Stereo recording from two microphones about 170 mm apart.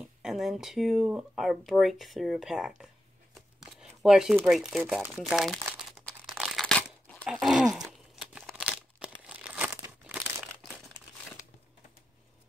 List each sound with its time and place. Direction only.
0.2 s speech: centre (ahead or behind)
3.3 s tearing: 5° right (ahead or behind)
4.5 s crumpling: centre (ahead or behind)